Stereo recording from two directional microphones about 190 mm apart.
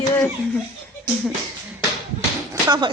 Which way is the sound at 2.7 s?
20° right (ahead or behind).